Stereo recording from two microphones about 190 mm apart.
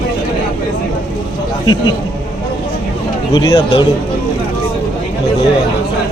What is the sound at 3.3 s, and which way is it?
Speech, 20° left (ahead or behind).